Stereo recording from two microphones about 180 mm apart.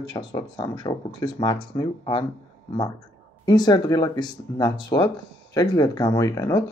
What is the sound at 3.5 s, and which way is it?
Speech, 25° left (ahead or behind).